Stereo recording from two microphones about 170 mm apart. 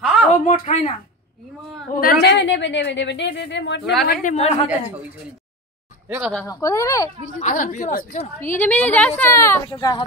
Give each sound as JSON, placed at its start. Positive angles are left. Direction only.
{"t": 0.0, "sound": "a sound", "side_deg": 0}
{"t": 0.5, "sound": "a woman's voice", "side_deg": 45}
{"t": 2.0, "sound": "a woman's voice", "side_deg": 70}
{"t": 4.0, "sound": "speech", "side_deg": 65}
{"t": 4.3, "sound": "a woman's voice", "side_deg": 40}
{"t": 6.0, "sound": "speech", "side_deg": -10}
{"t": 6.4, "sound": "speech", "side_deg": 20}
{"t": 7.3, "sound": "a woman's voice", "side_deg": 50}
{"t": 8.5, "sound": "a woman's voice", "side_deg": 10}